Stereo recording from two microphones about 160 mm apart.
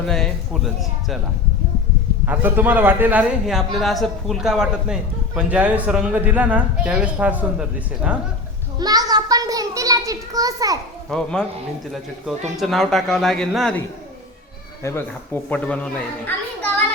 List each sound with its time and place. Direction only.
0.1 s a man's voice: centre (ahead or behind)
2.2 s a man's voice: 10° right (ahead or behind)
8.8 s a child's voice: 25° right (ahead or behind)
11.1 s a man's voice: 5° left (ahead or behind)
12.5 s a man's voice: centre (ahead or behind)
14.8 s speech: 15° left (ahead or behind)